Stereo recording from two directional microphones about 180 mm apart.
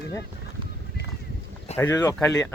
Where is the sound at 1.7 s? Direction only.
10° left (ahead or behind).